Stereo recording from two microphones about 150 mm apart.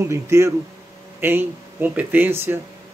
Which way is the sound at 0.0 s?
20° right (ahead or behind).